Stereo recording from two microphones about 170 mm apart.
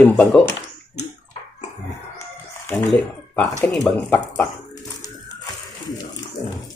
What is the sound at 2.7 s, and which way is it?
Speech, centre (ahead or behind).